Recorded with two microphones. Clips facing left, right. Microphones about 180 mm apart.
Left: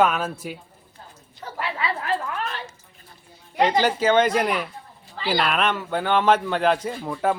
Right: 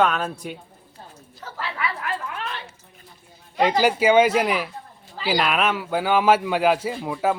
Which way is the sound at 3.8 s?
10° right (ahead or behind).